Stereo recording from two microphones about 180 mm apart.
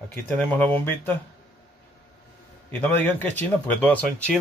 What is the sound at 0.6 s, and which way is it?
Speech, 10° left (ahead or behind).